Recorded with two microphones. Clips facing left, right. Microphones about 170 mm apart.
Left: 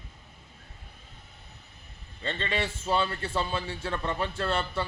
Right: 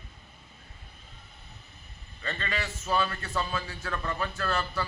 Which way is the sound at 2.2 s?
25° left (ahead or behind).